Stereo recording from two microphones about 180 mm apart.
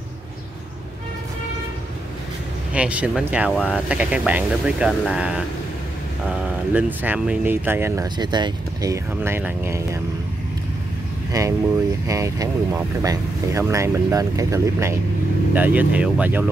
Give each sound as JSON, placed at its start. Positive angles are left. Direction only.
{"t": 2.7, "sound": "speech", "side_deg": -5}
{"t": 11.3, "sound": "speech", "side_deg": -20}